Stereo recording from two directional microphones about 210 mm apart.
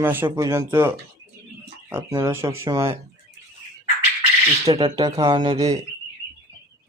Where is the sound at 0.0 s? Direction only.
10° right (ahead or behind).